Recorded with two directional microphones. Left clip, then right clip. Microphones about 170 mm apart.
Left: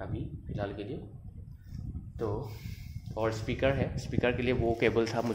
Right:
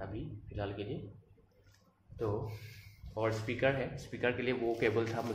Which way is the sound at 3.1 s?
40° left (ahead or behind).